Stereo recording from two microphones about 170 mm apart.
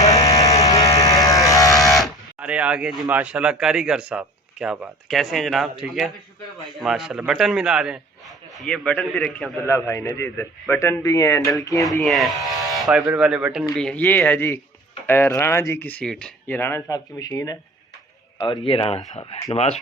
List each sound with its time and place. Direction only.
0.0 s a sound: 20° left (ahead or behind)
1.8 s buzzer: centre (ahead or behind)
3.1 s speech: 10° right (ahead or behind)
9.6 s speech: 15° left (ahead or behind)
12.0 s speech: centre (ahead or behind); by 19.4 s 35° left (ahead or behind)